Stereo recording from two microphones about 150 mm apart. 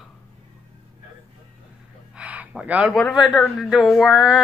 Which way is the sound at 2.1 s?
10° right (ahead or behind).